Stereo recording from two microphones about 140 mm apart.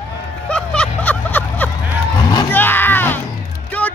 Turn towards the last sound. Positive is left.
turn(degrees=10)  # may be behind; listen again after turning